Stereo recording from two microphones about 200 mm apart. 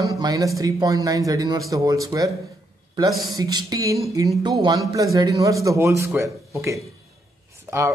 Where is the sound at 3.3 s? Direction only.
20° right (ahead or behind).